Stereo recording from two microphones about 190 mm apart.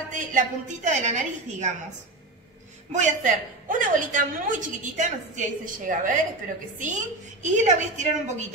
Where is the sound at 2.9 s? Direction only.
40° right (ahead or behind).